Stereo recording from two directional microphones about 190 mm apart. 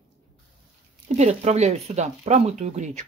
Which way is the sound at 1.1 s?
35° right (ahead or behind).